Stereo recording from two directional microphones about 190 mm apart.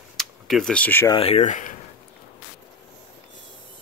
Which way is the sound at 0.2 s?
Centre (ahead or behind).